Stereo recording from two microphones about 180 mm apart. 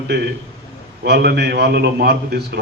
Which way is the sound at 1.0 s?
65° right (ahead or behind).